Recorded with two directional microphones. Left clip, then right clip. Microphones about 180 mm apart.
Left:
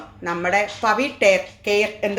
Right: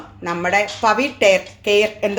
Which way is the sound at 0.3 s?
15° right (ahead or behind).